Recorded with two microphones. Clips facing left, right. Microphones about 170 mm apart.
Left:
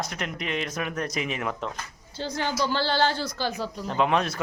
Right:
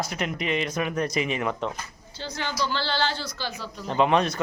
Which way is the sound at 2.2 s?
45° left (ahead or behind).